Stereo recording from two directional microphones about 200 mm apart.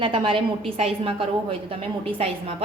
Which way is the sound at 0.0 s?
25° right (ahead or behind).